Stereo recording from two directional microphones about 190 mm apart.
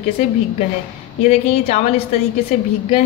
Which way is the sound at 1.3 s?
35° left (ahead or behind).